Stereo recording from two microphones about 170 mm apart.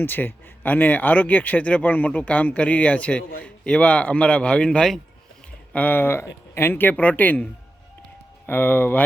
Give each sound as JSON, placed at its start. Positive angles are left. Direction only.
{"t": 0.0, "sound": "speech", "side_deg": 10}
{"t": 8.4, "sound": "speech", "side_deg": 10}